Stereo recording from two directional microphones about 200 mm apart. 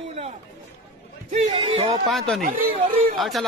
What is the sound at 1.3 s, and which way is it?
Speech, 35° right (ahead or behind).